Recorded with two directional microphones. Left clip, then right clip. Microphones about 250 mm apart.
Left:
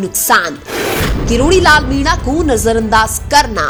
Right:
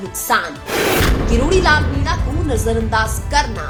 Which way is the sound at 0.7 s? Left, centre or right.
Centre.